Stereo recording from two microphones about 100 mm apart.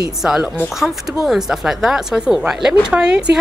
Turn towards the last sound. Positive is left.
turn(degrees=-10)  # may be behind; listen again after turning